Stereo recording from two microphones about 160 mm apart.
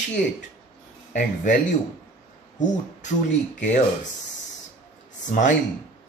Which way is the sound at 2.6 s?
50° left (ahead or behind).